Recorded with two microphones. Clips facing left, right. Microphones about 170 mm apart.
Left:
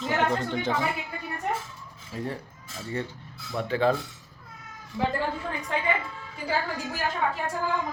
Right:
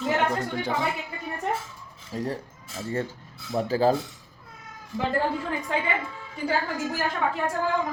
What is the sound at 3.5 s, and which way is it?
Speech, 35° right (ahead or behind).